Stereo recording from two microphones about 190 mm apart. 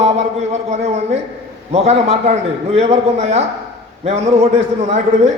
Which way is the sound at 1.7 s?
35° right (ahead or behind).